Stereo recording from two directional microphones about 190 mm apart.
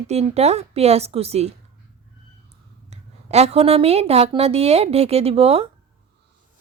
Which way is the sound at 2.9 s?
35° right (ahead or behind).